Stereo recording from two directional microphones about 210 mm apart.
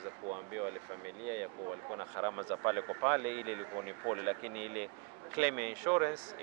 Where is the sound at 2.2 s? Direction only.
20° right (ahead or behind).